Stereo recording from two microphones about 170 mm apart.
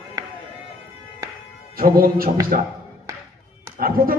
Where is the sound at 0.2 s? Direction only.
20° right (ahead or behind).